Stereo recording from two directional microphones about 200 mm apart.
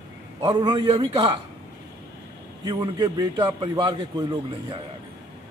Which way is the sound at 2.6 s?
20° right (ahead or behind).